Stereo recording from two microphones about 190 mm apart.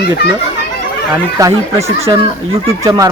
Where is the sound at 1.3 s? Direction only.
15° right (ahead or behind).